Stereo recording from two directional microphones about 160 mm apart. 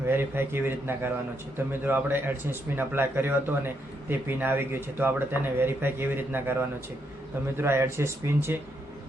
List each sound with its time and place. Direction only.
0.1 s speech: 15° right (ahead or behind)